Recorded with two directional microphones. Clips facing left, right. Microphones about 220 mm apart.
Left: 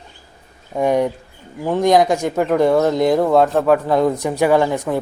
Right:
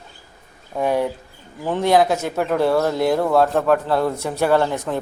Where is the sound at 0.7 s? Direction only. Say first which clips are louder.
Left 3 dB; 15° left (ahead or behind).